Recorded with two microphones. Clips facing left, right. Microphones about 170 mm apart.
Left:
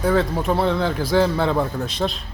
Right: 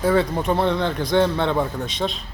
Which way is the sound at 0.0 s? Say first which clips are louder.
Even; centre (ahead or behind).